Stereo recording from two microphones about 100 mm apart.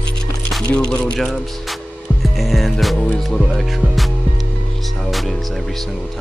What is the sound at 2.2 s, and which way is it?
Music, centre (ahead or behind).